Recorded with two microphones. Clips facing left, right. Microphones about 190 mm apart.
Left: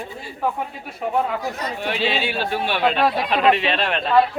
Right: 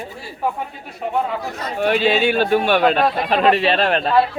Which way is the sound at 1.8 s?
45° right (ahead or behind).